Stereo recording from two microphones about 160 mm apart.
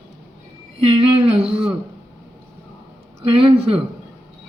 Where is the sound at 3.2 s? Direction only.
35° right (ahead or behind).